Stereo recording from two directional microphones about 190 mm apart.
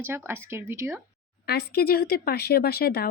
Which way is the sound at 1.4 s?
55° left (ahead or behind).